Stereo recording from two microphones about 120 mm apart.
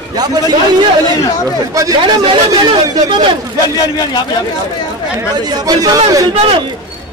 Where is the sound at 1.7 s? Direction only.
30° right (ahead or behind).